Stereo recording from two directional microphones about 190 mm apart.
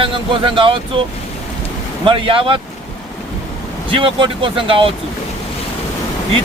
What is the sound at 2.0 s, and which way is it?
Speech, 25° right (ahead or behind).